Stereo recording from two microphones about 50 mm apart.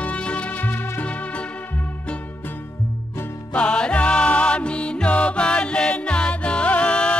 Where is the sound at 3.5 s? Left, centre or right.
Left.